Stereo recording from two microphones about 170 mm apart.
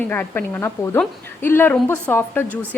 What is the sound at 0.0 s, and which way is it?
A woman's voice, 10° left (ahead or behind).